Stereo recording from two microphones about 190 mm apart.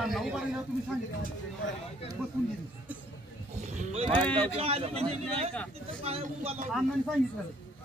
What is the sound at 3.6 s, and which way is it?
Speech, 35° right (ahead or behind).